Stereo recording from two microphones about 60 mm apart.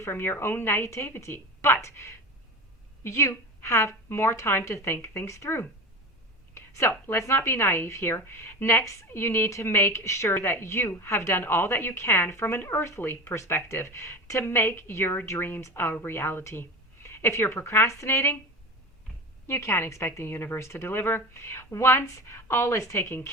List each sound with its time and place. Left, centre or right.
0.0 s speech: left
0.8 s a woman's voice: left
1.3 s speech: left
1.6 s a woman's voice: left
6.5 s a sound: left
7.1 s a woman's voice: left
8.7 s a woman's voice: left
9.1 s a woman's voice: left
13.7 s a woman's voice: left
16.6 s a sound: left
17.7 s a woman's voice: left
19.5 s a woman's voice: left